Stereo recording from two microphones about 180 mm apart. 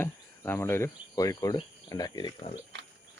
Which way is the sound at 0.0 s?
10° left (ahead or behind).